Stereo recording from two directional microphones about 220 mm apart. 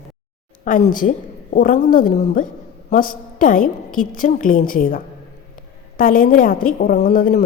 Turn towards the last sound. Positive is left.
turn(degrees=40)  # may be behind; listen again after turning